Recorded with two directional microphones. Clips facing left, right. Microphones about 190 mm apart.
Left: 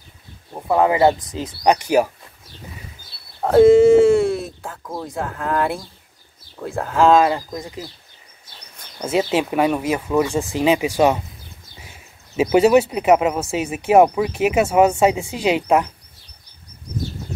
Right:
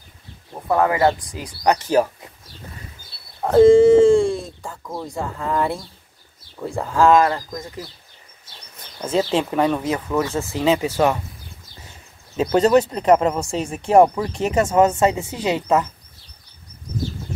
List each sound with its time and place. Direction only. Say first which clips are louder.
0.7 s speech: left 2 dB; 15° left (ahead or behind)
3.5 s speech: even; 10° left (ahead or behind)
7.2 s speech: left 1 dB; 15° left (ahead or behind)
8.9 s speech: left 1 dB; 10° left (ahead or behind)